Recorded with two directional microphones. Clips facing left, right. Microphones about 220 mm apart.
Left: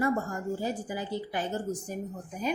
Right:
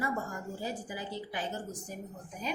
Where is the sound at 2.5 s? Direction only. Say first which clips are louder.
Left 6 dB; 50° left (ahead or behind).